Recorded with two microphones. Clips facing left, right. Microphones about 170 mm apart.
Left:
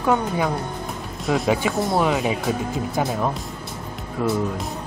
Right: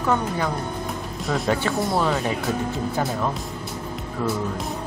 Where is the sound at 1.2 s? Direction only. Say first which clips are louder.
Left 3 dB; centre (ahead or behind).